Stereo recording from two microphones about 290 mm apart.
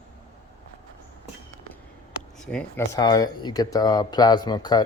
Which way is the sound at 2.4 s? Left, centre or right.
Centre.